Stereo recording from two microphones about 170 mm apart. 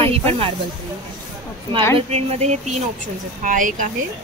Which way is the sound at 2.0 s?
40° right (ahead or behind).